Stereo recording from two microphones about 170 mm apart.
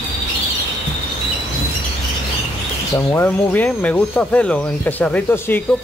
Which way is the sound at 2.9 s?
10° left (ahead or behind).